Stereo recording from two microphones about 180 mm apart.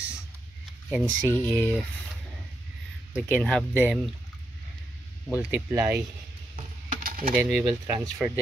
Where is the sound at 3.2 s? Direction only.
5° left (ahead or behind).